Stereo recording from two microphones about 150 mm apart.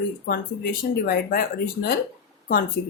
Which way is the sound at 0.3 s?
80° left.